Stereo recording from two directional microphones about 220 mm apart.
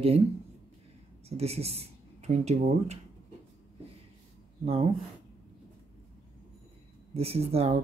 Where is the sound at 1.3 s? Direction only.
30° right (ahead or behind).